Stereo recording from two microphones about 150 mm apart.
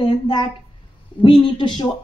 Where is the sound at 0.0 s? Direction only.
30° left (ahead or behind).